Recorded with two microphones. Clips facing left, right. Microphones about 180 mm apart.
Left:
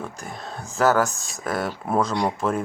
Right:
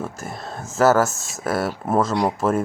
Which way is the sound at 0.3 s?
40° right (ahead or behind).